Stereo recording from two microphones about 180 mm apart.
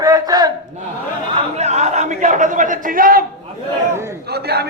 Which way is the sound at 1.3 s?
35° right (ahead or behind).